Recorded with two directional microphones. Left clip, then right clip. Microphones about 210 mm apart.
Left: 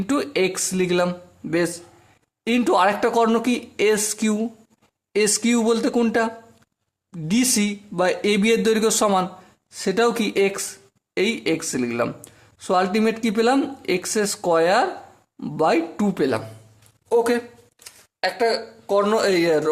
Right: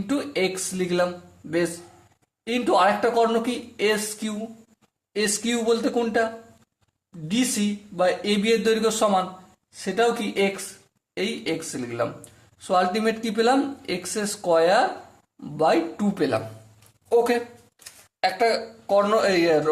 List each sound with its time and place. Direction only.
0.1 s speech: 35° left (ahead or behind)